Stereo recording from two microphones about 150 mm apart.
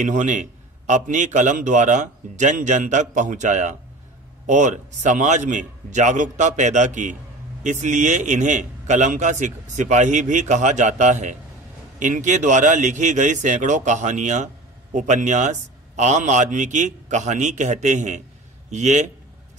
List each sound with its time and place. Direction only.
0.0 s a man's voice: 55° right (ahead or behind)